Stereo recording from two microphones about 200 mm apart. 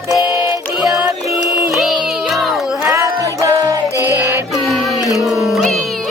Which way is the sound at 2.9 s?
15° right (ahead or behind).